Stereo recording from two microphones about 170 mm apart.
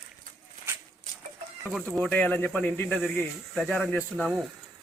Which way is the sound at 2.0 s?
10° left (ahead or behind).